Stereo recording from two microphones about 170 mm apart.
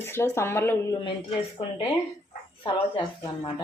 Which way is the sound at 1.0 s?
30° left (ahead or behind).